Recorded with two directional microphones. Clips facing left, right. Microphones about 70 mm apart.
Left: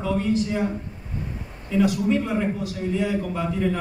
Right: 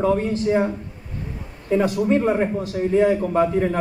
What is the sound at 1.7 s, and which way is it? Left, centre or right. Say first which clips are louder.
A man's voice: right 2 dB; right.